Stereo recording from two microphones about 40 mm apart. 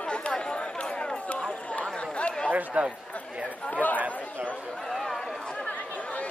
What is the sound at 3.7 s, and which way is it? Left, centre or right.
Speech, left.